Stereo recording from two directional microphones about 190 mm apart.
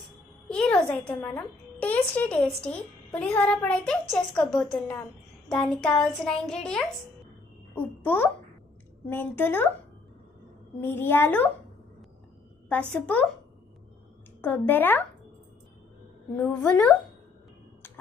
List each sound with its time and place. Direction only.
0.4 s a child's voice: 5° left (ahead or behind)
10.8 s a child's voice: 10° left (ahead or behind)
12.9 s a child's voice: 5° left (ahead or behind)
14.4 s a child's voice: 10° left (ahead or behind)
16.4 s a child's voice: 10° left (ahead or behind)
17.8 s a sound: 10° left (ahead or behind)